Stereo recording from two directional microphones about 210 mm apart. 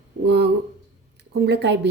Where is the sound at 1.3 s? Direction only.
55° right (ahead or behind).